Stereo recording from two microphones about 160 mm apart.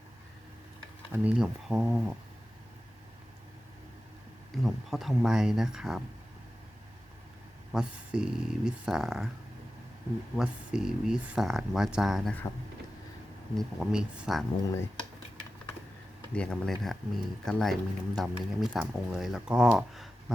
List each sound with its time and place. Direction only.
1.1 s speech: 5° right (ahead or behind)
4.5 s speech: centre (ahead or behind)
7.7 s speech: 5° right (ahead or behind)
10.3 s speech: 5° right (ahead or behind)
13.6 s speech: centre (ahead or behind)
14.6 s speech: 20° left (ahead or behind)
16.3 s speech: 5° left (ahead or behind)